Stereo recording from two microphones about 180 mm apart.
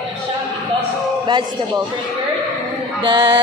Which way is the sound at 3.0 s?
25° right (ahead or behind).